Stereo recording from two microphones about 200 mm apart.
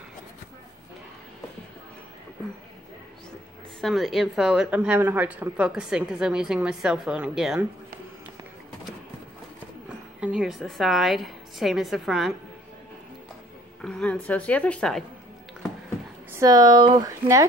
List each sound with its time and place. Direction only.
3.8 s a woman's voice: centre (ahead or behind)
9.8 s a woman's voice: 5° right (ahead or behind)
13.7 s a woman's voice: 5° left (ahead or behind)
16.3 s speech: 15° right (ahead or behind)